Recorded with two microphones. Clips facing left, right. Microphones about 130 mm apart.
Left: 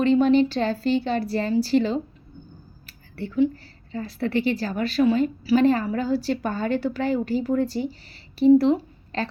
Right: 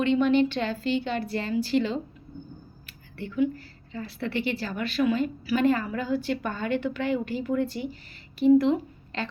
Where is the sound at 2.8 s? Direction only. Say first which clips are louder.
Left 5 dB; 40° left (ahead or behind).